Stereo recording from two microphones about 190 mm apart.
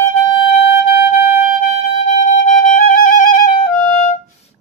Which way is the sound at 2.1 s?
40° left (ahead or behind).